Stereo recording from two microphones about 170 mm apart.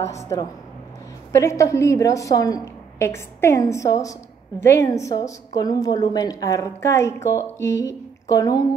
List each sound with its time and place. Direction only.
0.0 s a woman's voice: 15° left (ahead or behind)